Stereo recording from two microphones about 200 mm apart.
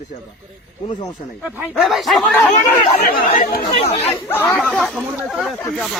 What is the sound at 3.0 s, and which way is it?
Speech, 45° left (ahead or behind).